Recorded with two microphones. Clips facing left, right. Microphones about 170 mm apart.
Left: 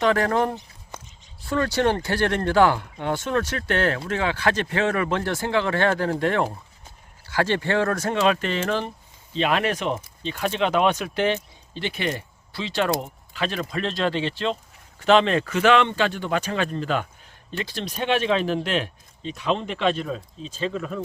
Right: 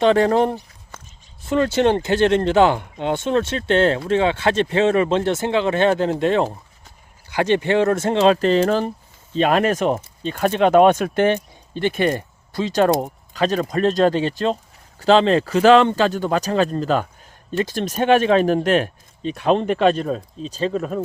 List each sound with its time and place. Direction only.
0.0 s speech: 25° right (ahead or behind)